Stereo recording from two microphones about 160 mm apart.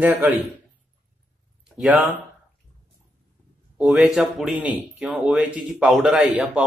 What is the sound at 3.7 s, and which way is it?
Speech, 5° right (ahead or behind).